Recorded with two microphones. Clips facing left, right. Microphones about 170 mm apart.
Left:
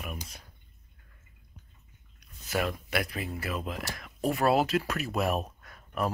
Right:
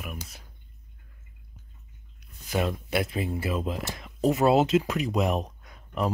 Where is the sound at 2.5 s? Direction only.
25° right (ahead or behind).